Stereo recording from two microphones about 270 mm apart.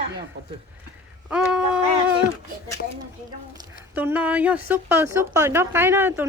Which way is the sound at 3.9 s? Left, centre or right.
Centre.